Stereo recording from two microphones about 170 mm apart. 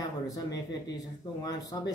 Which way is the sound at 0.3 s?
20° left (ahead or behind).